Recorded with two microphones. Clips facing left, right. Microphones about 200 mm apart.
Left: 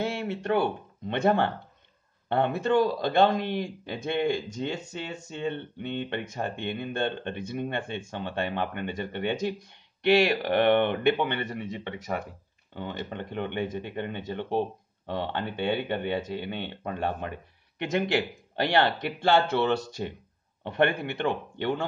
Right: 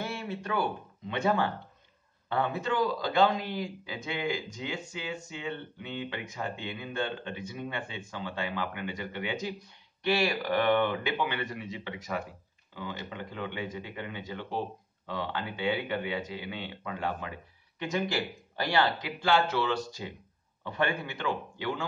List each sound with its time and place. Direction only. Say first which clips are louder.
0.0 s speech: left 6 dB; 70° left (ahead or behind)